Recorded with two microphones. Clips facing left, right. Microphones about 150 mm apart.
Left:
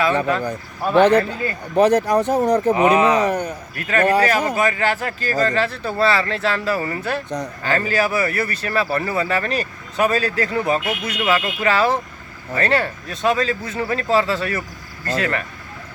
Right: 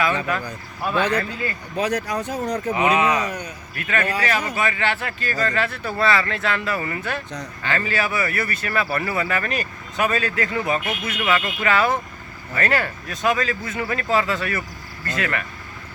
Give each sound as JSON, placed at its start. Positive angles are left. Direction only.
{"t": 0.3, "sound": "speech", "side_deg": 30}
{"t": 1.7, "sound": "speech", "side_deg": 50}
{"t": 2.7, "sound": "speech", "side_deg": 40}
{"t": 3.2, "sound": "a man's voice", "side_deg": 55}
{"t": 3.8, "sound": "speech", "side_deg": 40}